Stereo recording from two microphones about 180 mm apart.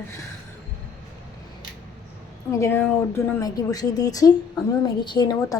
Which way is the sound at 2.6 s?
10° left (ahead or behind).